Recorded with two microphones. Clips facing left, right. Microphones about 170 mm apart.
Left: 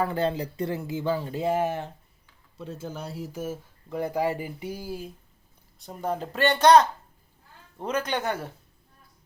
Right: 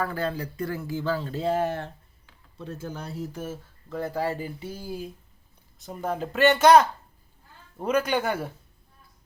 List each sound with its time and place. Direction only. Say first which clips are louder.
0.0 s speech: left 3 dB; 25° left (ahead or behind); by 8.4 s 10° right (ahead or behind)